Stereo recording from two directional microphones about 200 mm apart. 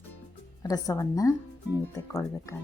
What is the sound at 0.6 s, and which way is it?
Speech, 20° left (ahead or behind).